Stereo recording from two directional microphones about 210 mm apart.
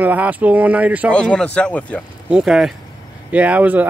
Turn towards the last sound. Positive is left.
turn(degrees=-5)  # may be behind; listen again after turning